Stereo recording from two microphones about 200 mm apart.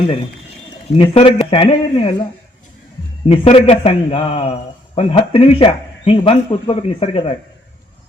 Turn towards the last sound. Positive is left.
turn(degrees=25)  # may be behind; listen again after turning